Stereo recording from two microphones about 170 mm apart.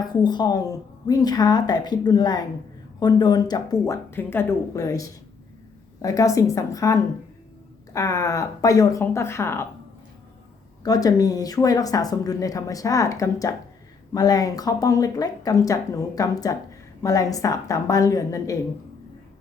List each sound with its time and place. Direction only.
0.0 s speech: 25° left (ahead or behind)
10.8 s speech: 20° left (ahead or behind)